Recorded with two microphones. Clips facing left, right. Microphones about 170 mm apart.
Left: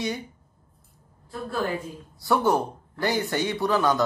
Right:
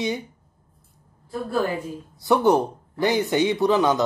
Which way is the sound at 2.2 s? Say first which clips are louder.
Right 4 dB; 20° right (ahead or behind).